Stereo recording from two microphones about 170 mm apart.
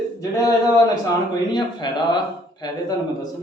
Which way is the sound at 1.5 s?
25° left (ahead or behind).